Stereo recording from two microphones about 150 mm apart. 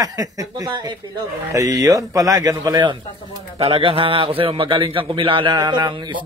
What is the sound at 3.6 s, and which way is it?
A man's voice, 35° right (ahead or behind).